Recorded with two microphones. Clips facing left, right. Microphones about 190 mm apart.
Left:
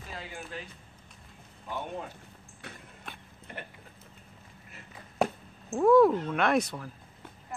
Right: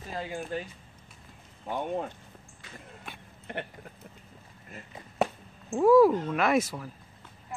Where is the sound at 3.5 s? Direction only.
65° right (ahead or behind).